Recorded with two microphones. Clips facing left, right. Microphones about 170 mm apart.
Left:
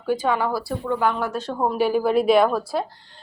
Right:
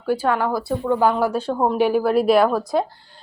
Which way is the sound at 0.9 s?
35° right (ahead or behind).